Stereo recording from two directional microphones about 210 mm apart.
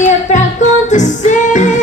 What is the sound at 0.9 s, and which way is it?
Music, 35° left (ahead or behind).